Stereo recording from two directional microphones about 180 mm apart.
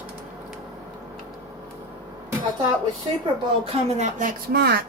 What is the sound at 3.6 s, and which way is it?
A woman's voice, 35° right (ahead or behind).